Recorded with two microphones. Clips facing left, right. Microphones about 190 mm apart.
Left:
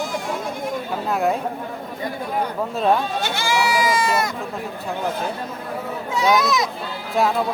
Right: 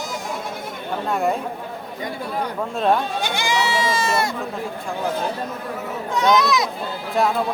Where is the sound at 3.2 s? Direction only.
15° right (ahead or behind).